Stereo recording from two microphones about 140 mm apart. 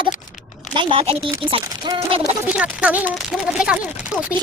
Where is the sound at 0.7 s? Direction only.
45° right (ahead or behind).